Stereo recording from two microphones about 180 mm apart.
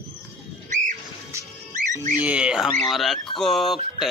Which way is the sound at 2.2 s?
5° right (ahead or behind).